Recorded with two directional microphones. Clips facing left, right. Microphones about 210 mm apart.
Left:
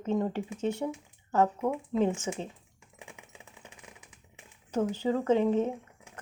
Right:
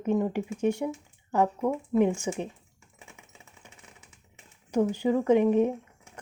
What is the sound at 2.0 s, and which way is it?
Speech, 15° right (ahead or behind).